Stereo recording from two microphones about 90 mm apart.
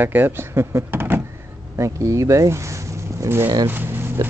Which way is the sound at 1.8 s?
35° right (ahead or behind).